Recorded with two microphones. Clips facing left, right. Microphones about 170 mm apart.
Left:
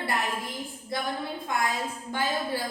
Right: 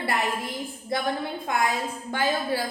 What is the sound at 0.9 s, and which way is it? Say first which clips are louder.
Speech: right 4 dB; 85° right.